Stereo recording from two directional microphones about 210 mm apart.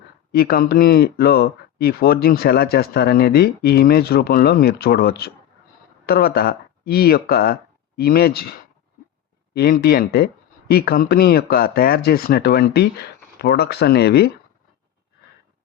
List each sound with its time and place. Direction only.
0.3 s speech: 45° left (ahead or behind)
9.6 s speech: 45° left (ahead or behind)